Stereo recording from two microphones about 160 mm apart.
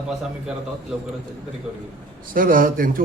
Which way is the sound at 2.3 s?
60° right (ahead or behind).